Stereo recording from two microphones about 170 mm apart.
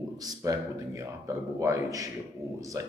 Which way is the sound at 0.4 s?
20° right (ahead or behind).